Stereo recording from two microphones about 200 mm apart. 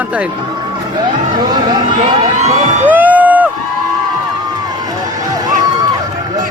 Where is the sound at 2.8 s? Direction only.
10° right (ahead or behind).